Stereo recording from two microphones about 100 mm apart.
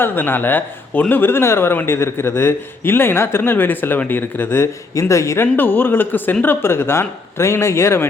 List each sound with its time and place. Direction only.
0.0 s a man's voice: 20° left (ahead or behind)